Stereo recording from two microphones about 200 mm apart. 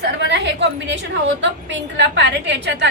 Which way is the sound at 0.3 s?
60° right (ahead or behind).